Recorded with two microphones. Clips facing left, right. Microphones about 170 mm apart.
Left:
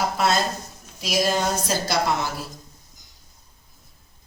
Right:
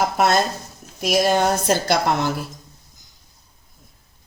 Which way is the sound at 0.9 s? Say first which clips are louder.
Right 5 dB; 60° right (ahead or behind).